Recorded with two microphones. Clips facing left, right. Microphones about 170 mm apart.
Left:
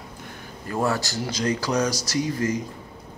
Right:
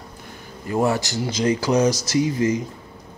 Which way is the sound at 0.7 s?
20° right (ahead or behind).